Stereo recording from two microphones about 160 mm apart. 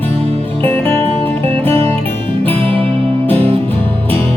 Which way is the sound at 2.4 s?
35° right (ahead or behind).